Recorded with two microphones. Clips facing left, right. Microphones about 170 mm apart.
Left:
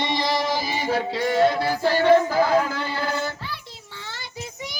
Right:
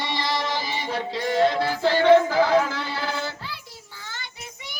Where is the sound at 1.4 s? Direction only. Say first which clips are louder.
Left 1 dB; 50° left (ahead or behind).